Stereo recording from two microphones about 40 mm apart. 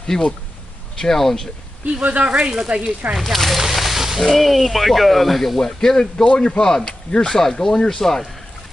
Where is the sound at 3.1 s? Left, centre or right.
Centre.